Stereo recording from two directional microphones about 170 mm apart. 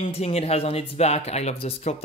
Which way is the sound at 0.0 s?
35° left (ahead or behind).